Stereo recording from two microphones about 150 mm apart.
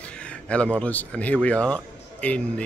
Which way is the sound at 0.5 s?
10° left (ahead or behind).